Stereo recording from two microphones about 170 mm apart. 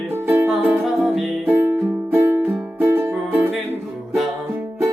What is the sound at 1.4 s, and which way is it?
Music, 10° right (ahead or behind).